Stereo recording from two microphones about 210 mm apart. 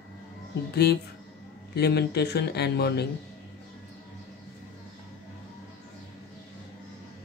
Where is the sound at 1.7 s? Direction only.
50° left (ahead or behind).